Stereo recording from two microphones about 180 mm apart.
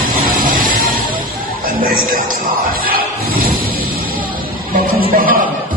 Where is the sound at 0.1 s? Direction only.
50° right (ahead or behind).